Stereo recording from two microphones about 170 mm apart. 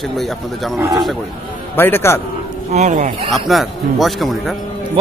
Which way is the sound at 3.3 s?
Centre (ahead or behind).